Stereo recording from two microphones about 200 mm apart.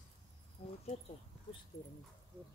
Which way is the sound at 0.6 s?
30° left (ahead or behind).